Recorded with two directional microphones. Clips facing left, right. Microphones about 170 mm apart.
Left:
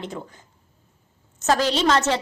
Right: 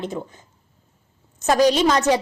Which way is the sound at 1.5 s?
15° right (ahead or behind).